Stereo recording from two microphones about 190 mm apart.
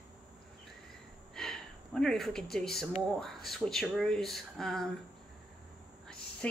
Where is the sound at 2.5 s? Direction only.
Centre (ahead or behind).